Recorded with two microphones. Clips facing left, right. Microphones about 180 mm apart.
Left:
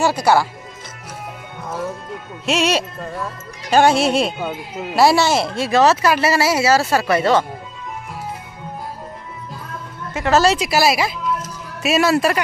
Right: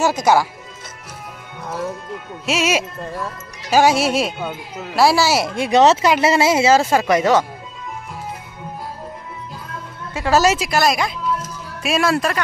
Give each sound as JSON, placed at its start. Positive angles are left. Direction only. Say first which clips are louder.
{"t": 0.2, "sound": "speech", "louder": "right 1 dB", "side_deg": -15}
{"t": 2.4, "sound": "speech", "louder": "left 1 dB", "side_deg": -5}
{"t": 10.1, "sound": "speech", "louder": "left 1 dB", "side_deg": -10}
{"t": 10.7, "sound": "speech", "louder": "left 1 dB", "side_deg": 5}